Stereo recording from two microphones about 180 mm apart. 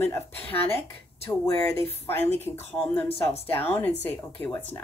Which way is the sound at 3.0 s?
35° left (ahead or behind).